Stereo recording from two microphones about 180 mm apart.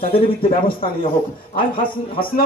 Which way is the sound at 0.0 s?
30° left (ahead or behind).